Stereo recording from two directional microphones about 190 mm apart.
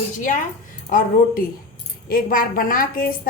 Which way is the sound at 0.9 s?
50° left (ahead or behind).